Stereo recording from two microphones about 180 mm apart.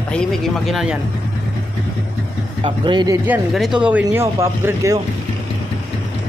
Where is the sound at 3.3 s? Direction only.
5° right (ahead or behind).